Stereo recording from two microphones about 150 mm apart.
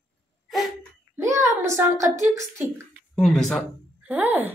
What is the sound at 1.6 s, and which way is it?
Speech, 20° right (ahead or behind).